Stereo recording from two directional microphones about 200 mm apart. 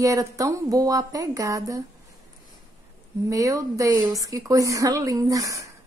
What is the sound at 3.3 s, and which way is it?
A woman's voice, 15° right (ahead or behind).